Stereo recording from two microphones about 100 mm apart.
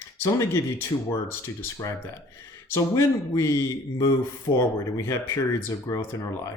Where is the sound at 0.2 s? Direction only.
30° left (ahead or behind).